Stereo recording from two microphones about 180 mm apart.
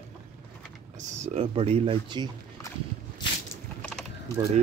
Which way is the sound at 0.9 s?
40° right (ahead or behind).